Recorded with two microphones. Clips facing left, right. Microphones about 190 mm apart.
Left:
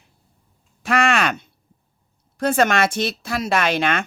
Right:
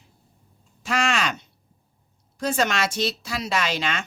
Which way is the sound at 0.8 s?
60° left (ahead or behind).